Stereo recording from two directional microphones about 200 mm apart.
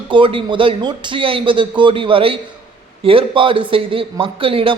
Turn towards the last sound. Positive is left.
turn(degrees=-25)  # may be behind; listen again after turning